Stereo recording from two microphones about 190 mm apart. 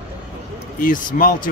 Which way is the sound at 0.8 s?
45° left (ahead or behind).